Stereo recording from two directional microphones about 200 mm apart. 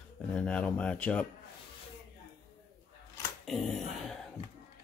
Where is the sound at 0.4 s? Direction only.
5° left (ahead or behind).